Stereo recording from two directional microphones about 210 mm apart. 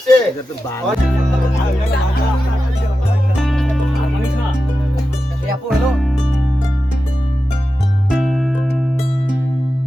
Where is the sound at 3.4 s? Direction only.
Centre (ahead or behind).